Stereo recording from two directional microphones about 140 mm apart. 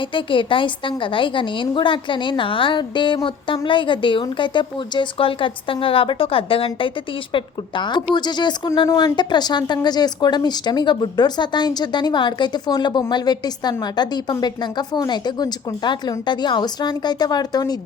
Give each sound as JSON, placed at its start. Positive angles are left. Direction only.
{"t": 0.1, "sound": "a woman's voice", "side_deg": 35}